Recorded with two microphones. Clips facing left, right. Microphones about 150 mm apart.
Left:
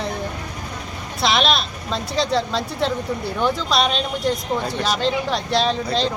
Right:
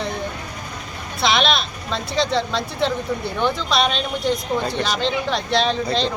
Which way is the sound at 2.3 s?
5° left (ahead or behind).